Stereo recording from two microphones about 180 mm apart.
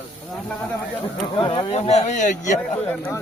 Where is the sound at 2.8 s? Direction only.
10° left (ahead or behind).